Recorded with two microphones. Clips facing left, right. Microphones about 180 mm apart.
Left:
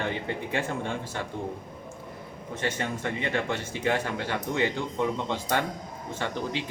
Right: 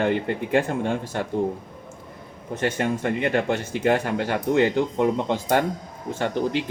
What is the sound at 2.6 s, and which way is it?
Speech, 50° right (ahead or behind).